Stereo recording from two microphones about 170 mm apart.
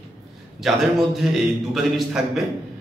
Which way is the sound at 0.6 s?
Centre (ahead or behind).